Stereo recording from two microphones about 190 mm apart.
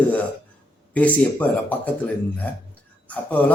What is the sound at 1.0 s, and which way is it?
A man's voice, 10° left (ahead or behind).